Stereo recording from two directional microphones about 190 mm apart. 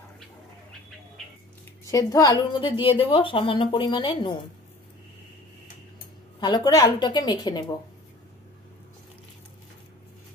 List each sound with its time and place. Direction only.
1.9 s a woman's voice: 15° left (ahead or behind)
6.4 s a woman's voice: 20° left (ahead or behind)